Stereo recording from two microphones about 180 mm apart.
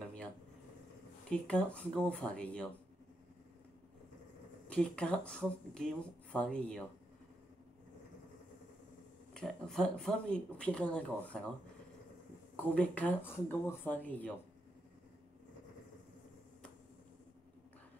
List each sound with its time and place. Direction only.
1.3 s speech: 5° left (ahead or behind)
4.6 s speech: 5° left (ahead or behind)
9.3 s speech: 5° left (ahead or behind)
12.7 s speech: 10° left (ahead or behind)